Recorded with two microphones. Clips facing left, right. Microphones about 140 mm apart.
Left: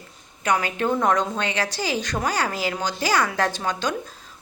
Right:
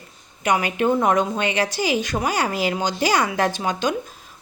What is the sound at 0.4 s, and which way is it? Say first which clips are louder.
A woman's voice: right 3 dB; 15° right (ahead or behind).